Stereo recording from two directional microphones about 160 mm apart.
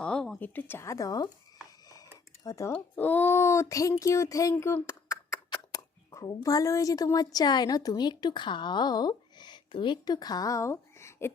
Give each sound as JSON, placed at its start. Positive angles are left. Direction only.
{"t": 0.0, "sound": "speech", "side_deg": 5}
{"t": 2.4, "sound": "speech", "side_deg": 20}